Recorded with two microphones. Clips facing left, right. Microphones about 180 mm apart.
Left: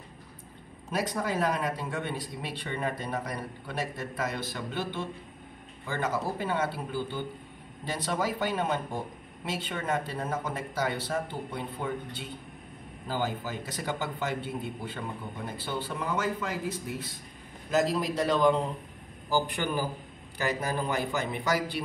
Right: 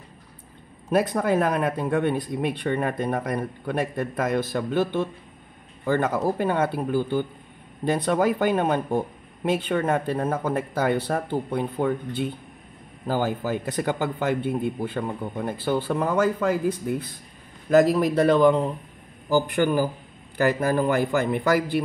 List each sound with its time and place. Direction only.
0.9 s a man's voice: 55° right (ahead or behind)